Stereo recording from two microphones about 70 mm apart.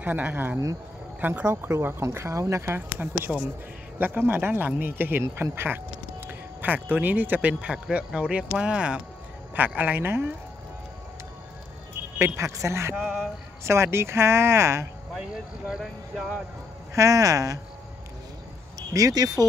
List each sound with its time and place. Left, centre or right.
0.0 s speech: right
1.5 s speech: right
2.6 s speech: right
12.2 s speech: right
13.0 s music: centre
13.7 s speech: right
15.7 s speech: centre
16.9 s speech: right
18.9 s speech: right